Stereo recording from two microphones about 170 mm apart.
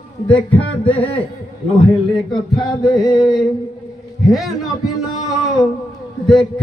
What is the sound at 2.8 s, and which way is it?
Music, centre (ahead or behind).